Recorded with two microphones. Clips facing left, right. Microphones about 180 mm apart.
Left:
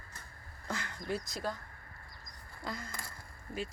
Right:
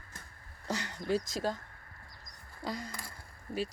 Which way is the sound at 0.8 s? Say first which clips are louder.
Right 8 dB; 90° right.